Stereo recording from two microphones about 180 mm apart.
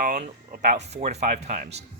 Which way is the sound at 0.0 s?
45° right (ahead or behind).